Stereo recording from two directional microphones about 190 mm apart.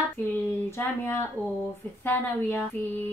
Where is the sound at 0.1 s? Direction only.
10° left (ahead or behind).